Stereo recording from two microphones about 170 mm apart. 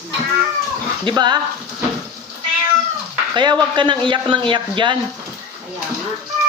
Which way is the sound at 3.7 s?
25° right (ahead or behind).